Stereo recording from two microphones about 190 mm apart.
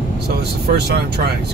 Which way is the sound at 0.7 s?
60° right (ahead or behind).